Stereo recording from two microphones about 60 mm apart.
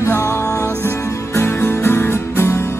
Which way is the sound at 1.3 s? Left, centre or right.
Left.